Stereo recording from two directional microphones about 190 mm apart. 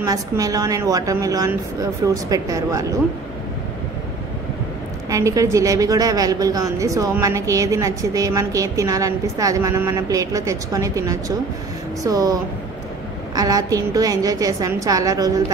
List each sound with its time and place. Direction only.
0.0 s a woman's voice: 20° right (ahead or behind)
5.1 s a woman's voice: 15° right (ahead or behind)